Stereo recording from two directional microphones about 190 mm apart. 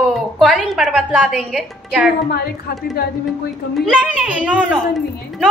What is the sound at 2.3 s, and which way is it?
Speech, 55° left (ahead or behind).